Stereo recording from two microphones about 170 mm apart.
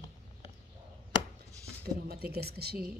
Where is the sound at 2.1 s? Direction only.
65° right (ahead or behind).